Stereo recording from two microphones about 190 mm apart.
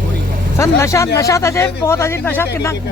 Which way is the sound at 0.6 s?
15° left (ahead or behind).